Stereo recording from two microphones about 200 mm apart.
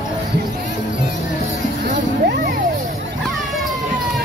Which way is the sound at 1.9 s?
45° right (ahead or behind).